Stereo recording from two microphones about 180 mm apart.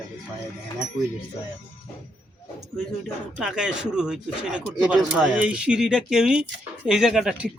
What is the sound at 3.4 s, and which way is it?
Speech, 5° right (ahead or behind).